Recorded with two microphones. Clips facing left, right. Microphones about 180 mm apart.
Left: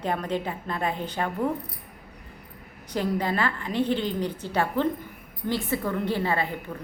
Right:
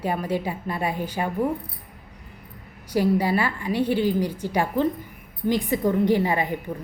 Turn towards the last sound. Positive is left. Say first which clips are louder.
# right 5 dB
turn(degrees=-15)  # may be behind; listen again after turning